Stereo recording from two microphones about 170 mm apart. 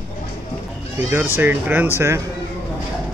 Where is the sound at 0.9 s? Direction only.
10° right (ahead or behind).